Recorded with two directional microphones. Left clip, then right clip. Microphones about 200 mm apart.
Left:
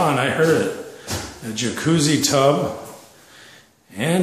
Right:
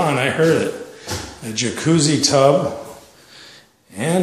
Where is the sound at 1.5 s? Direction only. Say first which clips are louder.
Right 2 dB; 5° right (ahead or behind).